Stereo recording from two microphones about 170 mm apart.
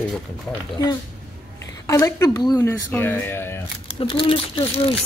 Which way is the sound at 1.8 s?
20° left (ahead or behind).